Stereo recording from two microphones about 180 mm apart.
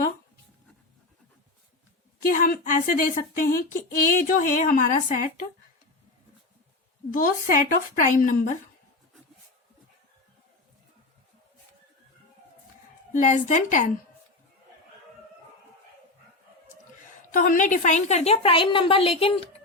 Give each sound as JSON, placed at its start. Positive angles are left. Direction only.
{"t": 2.3, "sound": "speech", "side_deg": 50}
{"t": 7.1, "sound": "speech", "side_deg": 50}
{"t": 13.1, "sound": "speech", "side_deg": 45}
{"t": 17.3, "sound": "a woman's voice", "side_deg": 45}